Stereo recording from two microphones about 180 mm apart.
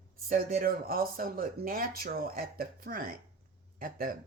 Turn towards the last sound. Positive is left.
turn(degrees=-50)  # may be behind; listen again after turning